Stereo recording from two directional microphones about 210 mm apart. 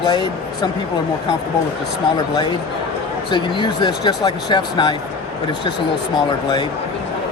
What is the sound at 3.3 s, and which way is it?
Speech, 20° left (ahead or behind).